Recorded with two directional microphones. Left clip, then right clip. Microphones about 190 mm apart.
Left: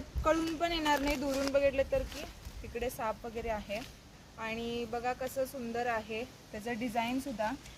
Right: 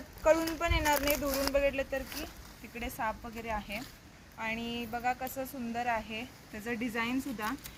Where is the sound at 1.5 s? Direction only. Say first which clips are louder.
Left 4 dB; 35° left (ahead or behind).